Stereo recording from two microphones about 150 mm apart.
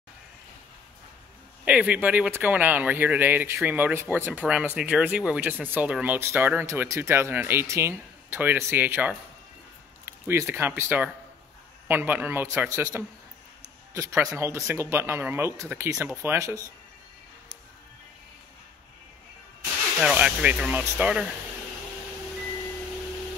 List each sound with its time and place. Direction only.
1.6 s speech: 10° right (ahead or behind)
20.0 s speech: 5° right (ahead or behind)